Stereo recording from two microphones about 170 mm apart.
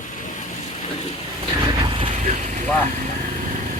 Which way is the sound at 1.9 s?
30° right (ahead or behind).